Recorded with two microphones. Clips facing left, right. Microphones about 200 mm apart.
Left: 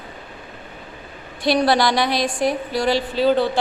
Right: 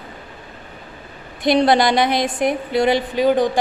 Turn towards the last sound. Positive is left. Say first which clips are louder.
# right 1 dB
turn(degrees=-15)  # may be behind; listen again after turning